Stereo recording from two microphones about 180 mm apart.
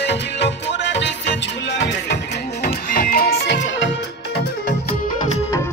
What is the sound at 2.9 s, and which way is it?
Music, 50° left (ahead or behind).